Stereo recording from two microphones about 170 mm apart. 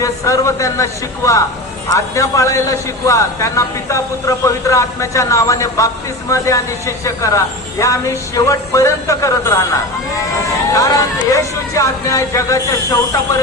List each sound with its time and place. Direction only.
0.0 s a man's voice: 20° left (ahead or behind)
10.7 s speech: 20° left (ahead or behind)